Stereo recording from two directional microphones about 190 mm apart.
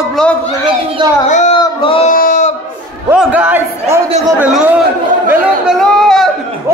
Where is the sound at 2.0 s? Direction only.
45° left (ahead or behind).